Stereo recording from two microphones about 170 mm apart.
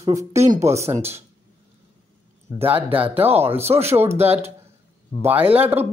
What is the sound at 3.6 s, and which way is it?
Speech, 40° right (ahead or behind).